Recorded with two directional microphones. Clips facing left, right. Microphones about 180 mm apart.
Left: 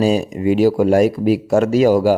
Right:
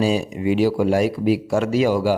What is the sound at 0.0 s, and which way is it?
Speech, 45° left (ahead or behind).